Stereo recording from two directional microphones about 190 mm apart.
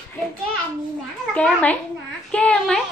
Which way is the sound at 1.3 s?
5° left (ahead or behind).